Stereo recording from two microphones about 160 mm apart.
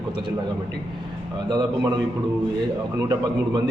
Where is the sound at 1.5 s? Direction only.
30° right (ahead or behind).